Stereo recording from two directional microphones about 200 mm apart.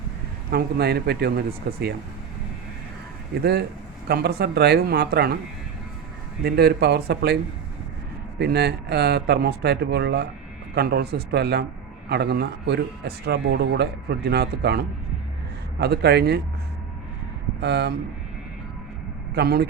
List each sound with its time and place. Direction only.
0.5 s a man's voice: 55° right (ahead or behind)
4.1 s a man's voice: 55° right (ahead or behind)
6.4 s a man's voice: 55° right (ahead or behind)
8.4 s a man's voice: 55° right (ahead or behind)
17.6 s speech: 55° right (ahead or behind)
19.3 s speech: 55° right (ahead or behind)